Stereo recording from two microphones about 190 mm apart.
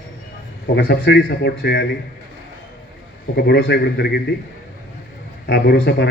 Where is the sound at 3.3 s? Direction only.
60° left (ahead or behind).